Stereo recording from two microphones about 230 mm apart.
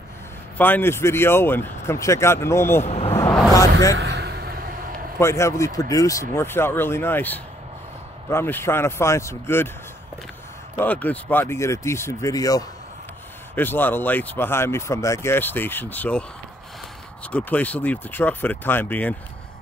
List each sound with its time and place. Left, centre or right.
0.6 s speech: centre
2.8 s speech: left
3.2 s vehicle: centre
3.9 s vehicle: right
5.2 s speech: centre
10.8 s speech: centre